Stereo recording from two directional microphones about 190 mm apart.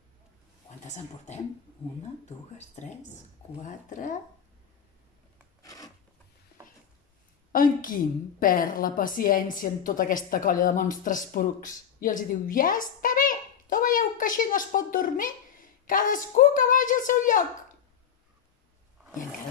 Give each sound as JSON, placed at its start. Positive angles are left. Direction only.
{"t": 0.8, "sound": "speech", "side_deg": 40}
{"t": 5.6, "sound": "a sound", "side_deg": 20}
{"t": 7.5, "sound": "a woman's voice", "side_deg": 45}